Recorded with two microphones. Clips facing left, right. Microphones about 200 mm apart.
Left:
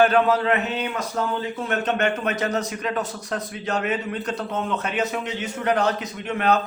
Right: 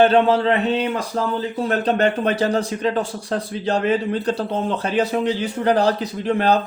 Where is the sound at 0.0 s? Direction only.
25° right (ahead or behind).